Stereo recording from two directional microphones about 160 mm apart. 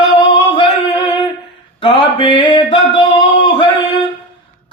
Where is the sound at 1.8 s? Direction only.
30° left (ahead or behind).